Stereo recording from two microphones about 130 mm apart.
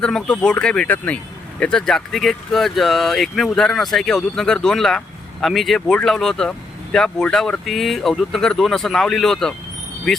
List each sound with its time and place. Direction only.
0.0 s speech: 5° left (ahead or behind)